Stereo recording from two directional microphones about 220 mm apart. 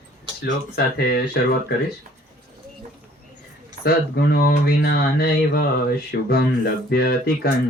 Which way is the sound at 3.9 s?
45° left (ahead or behind).